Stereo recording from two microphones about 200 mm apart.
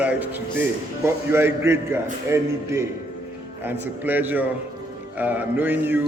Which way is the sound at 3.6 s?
10° right (ahead or behind).